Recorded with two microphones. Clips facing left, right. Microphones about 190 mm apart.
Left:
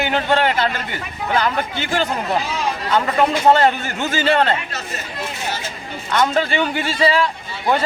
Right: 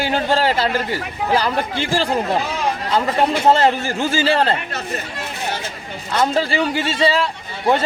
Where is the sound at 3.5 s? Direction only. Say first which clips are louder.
Even; 30° right (ahead or behind).